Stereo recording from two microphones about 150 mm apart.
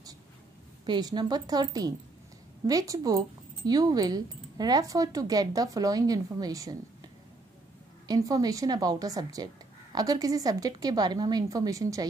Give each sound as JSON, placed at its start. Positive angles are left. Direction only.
{"t": 0.8, "sound": "speech", "side_deg": -30}
{"t": 8.1, "sound": "speech", "side_deg": -25}